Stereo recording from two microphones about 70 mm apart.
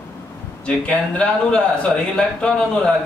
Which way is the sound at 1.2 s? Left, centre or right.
Centre.